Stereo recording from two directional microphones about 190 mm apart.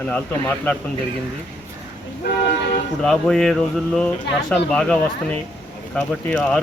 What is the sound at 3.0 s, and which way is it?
Speech, centre (ahead or behind).